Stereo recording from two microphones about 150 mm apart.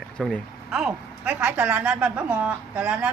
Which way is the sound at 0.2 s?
Centre (ahead or behind).